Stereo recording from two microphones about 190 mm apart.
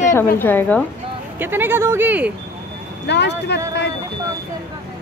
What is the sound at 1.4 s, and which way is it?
Speech, 10° right (ahead or behind).